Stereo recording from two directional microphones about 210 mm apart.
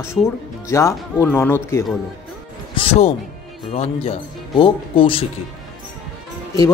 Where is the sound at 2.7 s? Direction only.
25° left (ahead or behind).